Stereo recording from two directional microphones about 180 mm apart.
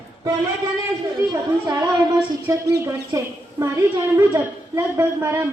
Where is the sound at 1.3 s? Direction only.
20° right (ahead or behind).